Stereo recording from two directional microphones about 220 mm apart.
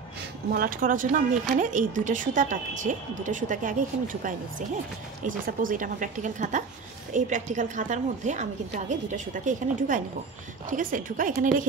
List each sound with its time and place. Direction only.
0.5 s a woman's voice: 40° right (ahead or behind)